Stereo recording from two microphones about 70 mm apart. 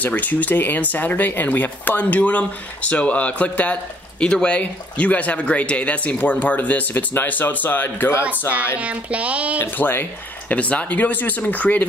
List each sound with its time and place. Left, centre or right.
0.0 s speech: left
8.7 s speech: centre
9.6 s speech: left